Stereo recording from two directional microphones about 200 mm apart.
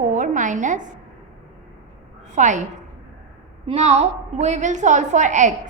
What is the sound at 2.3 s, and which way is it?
Speech, 40° right (ahead or behind).